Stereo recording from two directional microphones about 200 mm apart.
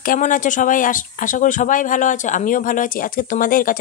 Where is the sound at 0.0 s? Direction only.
40° left (ahead or behind).